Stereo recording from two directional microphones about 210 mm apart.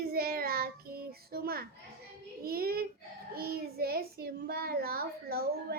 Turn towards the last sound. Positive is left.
turn(degrees=-45)  # may be behind; listen again after turning